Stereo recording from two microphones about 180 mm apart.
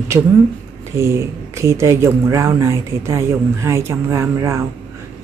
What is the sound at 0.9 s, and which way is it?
Speech, 15° right (ahead or behind).